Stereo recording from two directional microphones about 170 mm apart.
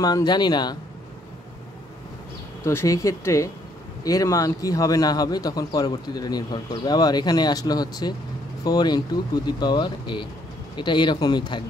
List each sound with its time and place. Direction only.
0.0 s a man's voice: 25° left (ahead or behind)
2.6 s a man's voice: 15° left (ahead or behind)